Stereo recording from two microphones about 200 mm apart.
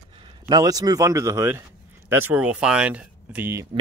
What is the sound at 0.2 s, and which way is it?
A man's voice, 20° right (ahead or behind).